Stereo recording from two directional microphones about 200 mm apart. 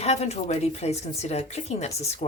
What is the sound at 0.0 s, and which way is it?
Speech, 30° left (ahead or behind).